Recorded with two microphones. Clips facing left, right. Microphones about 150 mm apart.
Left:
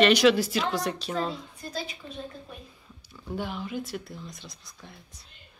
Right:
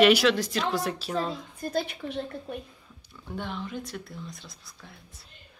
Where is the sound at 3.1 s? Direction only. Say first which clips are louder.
Left 2 dB; 5° left (ahead or behind).